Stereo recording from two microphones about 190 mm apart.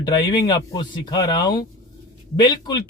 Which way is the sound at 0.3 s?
20° left (ahead or behind).